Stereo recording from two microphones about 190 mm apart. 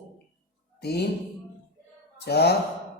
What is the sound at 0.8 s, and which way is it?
Speech, 60° left (ahead or behind).